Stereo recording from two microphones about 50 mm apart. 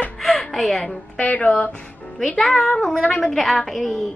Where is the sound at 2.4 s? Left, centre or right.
Centre.